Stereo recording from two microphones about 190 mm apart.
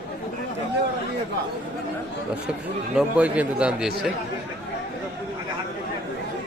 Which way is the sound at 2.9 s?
5° right (ahead or behind).